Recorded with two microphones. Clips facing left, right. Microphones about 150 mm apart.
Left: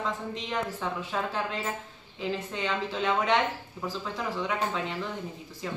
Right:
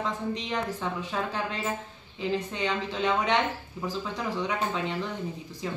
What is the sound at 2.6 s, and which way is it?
Speech, centre (ahead or behind).